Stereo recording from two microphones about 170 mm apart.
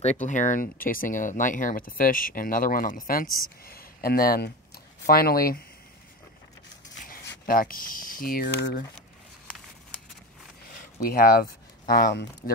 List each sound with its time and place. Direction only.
0.0 s speech: 40° left (ahead or behind); by 5.6 s 60° left (ahead or behind)
7.4 s speech: 55° left (ahead or behind)
10.7 s a sound: 60° left (ahead or behind)
11.9 s speech: 65° left (ahead or behind)